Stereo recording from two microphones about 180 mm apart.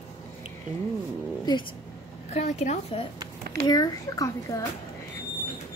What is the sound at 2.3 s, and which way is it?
Speech, 40° left (ahead or behind).